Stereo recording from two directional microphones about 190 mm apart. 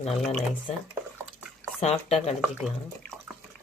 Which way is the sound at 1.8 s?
35° left (ahead or behind).